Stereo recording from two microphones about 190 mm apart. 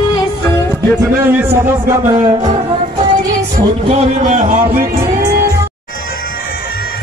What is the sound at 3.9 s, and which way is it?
Speech, 35° right (ahead or behind).